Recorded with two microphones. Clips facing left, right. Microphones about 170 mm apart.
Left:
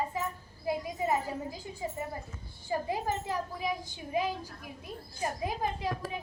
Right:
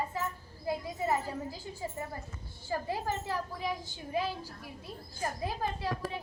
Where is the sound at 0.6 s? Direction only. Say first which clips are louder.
Left 1 dB; 15° left (ahead or behind).